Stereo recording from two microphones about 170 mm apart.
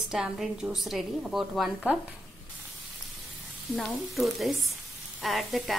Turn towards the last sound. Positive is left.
turn(degrees=0)  # may be behind; listen again after turning